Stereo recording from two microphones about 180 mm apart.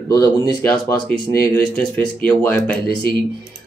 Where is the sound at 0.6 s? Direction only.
10° left (ahead or behind).